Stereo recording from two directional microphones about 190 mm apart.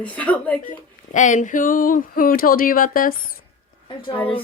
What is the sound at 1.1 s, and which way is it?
Speech, 40° left (ahead or behind).